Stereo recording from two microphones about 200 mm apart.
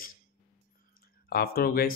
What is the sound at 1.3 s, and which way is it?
Speech, 50° left (ahead or behind).